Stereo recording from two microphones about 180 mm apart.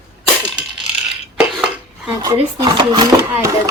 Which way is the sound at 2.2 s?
25° right (ahead or behind).